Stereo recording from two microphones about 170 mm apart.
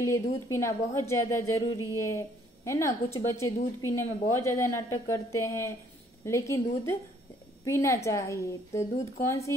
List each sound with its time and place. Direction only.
0.0 s a woman's voice: 15° left (ahead or behind)